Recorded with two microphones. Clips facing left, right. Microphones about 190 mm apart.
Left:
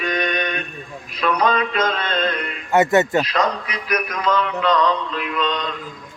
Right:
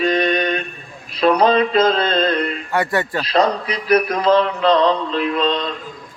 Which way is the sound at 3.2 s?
30° right (ahead or behind).